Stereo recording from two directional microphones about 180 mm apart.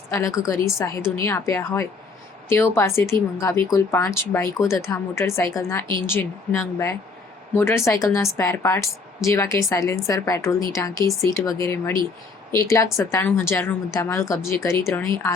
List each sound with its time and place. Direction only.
0.1 s a woman's voice: 15° left (ahead or behind)